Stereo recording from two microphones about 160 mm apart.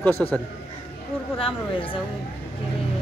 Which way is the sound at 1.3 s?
35° left (ahead or behind).